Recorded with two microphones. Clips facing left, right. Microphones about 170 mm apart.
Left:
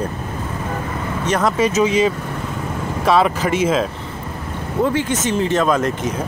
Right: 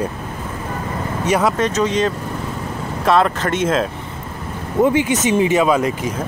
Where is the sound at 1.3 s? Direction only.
5° right (ahead or behind).